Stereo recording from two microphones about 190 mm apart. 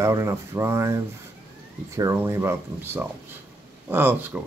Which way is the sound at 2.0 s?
15° right (ahead or behind).